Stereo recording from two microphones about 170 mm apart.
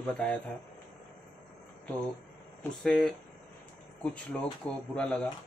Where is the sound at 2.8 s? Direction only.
5° left (ahead or behind).